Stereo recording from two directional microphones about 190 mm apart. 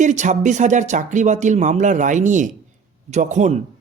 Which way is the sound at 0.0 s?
40° right (ahead or behind).